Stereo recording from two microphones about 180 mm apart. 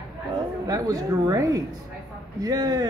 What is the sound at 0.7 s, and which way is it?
Speech, 20° right (ahead or behind).